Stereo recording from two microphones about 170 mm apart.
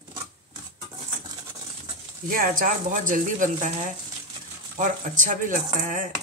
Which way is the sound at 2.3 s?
55° right (ahead or behind).